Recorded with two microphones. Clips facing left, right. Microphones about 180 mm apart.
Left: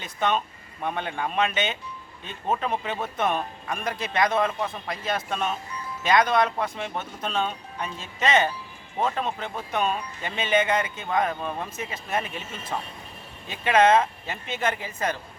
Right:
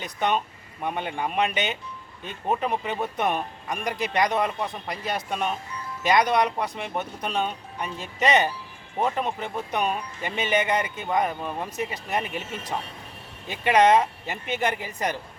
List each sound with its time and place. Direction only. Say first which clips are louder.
0.0 s speech: even; 15° right (ahead or behind)
13.5 s speech: right 1 dB; 15° right (ahead or behind)